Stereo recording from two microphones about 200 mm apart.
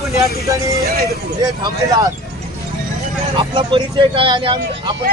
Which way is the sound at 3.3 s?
25° right (ahead or behind).